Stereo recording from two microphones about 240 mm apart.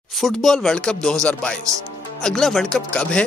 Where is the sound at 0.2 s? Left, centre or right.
Centre.